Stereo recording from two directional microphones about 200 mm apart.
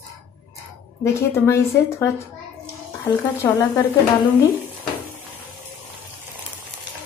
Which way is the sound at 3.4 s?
15° left (ahead or behind).